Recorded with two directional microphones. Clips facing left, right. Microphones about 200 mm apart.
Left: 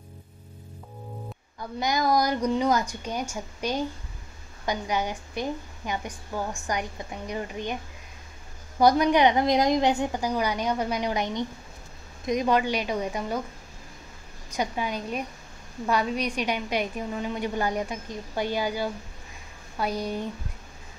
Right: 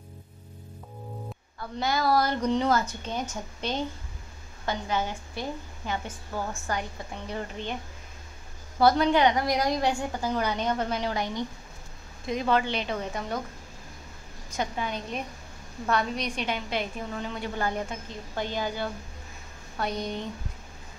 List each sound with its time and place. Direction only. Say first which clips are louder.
1.8 s a woman's voice: left 1 dB; 15° left (ahead or behind)
8.7 s a woman's voice: left 2 dB; 15° left (ahead or behind)
14.6 s a woman's voice: left 2 dB; 10° left (ahead or behind)